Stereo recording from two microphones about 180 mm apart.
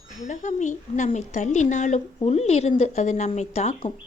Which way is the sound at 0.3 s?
40° left (ahead or behind).